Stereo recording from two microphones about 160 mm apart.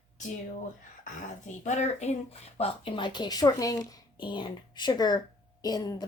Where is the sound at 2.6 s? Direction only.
35° left (ahead or behind).